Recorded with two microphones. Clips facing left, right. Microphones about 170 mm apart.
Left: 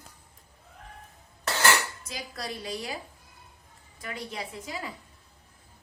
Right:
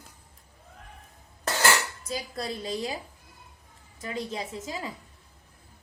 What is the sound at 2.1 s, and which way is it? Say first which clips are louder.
Speech: right 6 dB; 25° right (ahead or behind).